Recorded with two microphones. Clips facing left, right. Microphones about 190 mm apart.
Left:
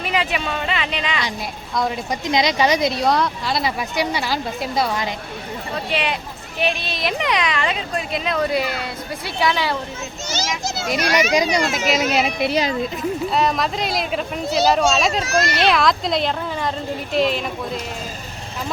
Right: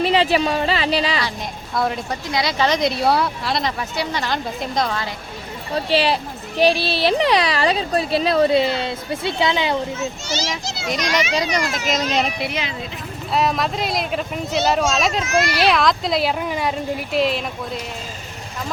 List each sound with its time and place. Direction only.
0.0 s speech: 30° right (ahead or behind)
1.7 s speech: 5° right (ahead or behind)
2.0 s a woman's voice: 20° left (ahead or behind)
2.8 s speech: 5° right (ahead or behind)
3.8 s a woman's voice: 15° left (ahead or behind)
5.7 s speech: 35° right (ahead or behind)
10.2 s a child's voice: 45° left (ahead or behind)
11.9 s speech: 5° left (ahead or behind)
12.4 s speech: 35° left (ahead or behind)
13.3 s speech: centre (ahead or behind)
15.2 s speech: 35° left (ahead or behind)
15.4 s speech: centre (ahead or behind)
16.4 s speech: 10° right (ahead or behind)